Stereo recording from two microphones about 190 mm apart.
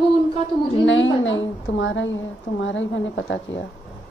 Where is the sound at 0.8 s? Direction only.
80° left.